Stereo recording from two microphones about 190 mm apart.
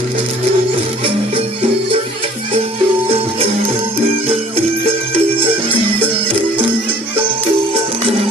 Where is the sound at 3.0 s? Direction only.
30° right (ahead or behind).